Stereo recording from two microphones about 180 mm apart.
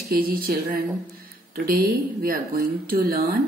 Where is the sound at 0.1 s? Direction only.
55° right (ahead or behind).